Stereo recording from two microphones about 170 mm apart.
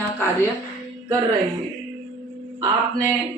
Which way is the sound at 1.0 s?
20° right (ahead or behind).